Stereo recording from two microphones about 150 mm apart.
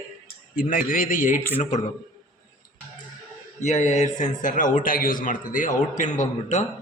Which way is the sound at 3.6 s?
50° left (ahead or behind).